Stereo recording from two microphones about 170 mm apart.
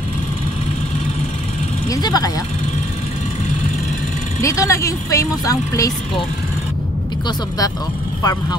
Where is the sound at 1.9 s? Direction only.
20° left (ahead or behind).